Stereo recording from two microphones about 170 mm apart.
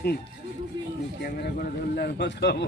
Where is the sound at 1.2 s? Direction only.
65° left (ahead or behind).